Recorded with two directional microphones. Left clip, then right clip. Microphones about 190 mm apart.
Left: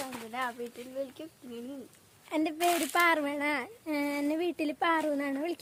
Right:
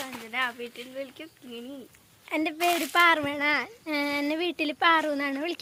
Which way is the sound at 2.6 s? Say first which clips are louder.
Right 3 dB; 30° right (ahead or behind).